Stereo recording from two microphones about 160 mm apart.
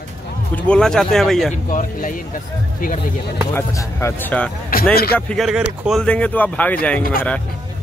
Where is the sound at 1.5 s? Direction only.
55° left (ahead or behind).